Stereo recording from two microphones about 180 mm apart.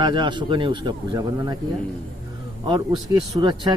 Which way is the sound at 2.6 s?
25° right (ahead or behind).